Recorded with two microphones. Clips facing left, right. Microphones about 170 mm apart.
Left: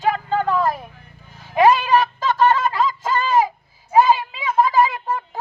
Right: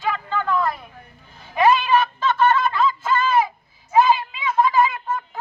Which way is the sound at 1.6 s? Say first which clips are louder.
Left 2 dB; 40° left (ahead or behind).